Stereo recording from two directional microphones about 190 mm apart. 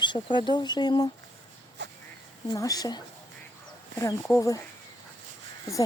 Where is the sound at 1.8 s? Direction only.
65° right (ahead or behind).